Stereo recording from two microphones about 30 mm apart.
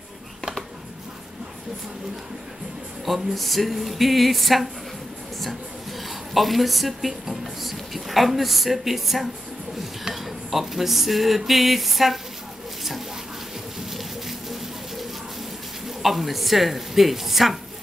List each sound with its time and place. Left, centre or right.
3.1 s speech: centre
6.0 s speech: centre
16.0 s speech: centre